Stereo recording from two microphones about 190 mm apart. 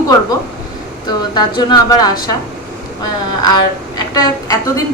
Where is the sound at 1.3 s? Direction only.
25° left (ahead or behind).